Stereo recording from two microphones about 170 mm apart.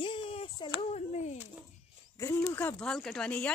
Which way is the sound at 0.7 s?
40° left (ahead or behind).